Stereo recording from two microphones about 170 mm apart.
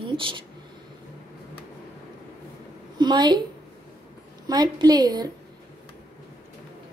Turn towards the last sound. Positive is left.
turn(degrees=-25)  # may be behind; listen again after turning